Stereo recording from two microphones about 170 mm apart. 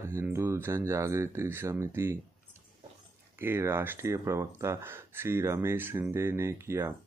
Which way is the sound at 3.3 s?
15° right (ahead or behind).